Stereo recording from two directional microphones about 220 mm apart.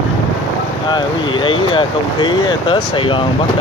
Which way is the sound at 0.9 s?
20° left (ahead or behind).